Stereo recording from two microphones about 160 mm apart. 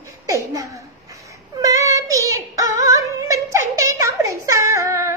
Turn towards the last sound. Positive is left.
turn(degrees=-20)  # may be behind; listen again after turning